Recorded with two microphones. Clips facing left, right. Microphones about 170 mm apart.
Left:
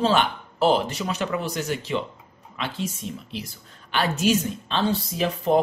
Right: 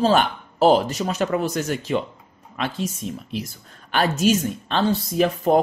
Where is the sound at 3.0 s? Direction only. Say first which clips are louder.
Right 4 dB; 45° right (ahead or behind).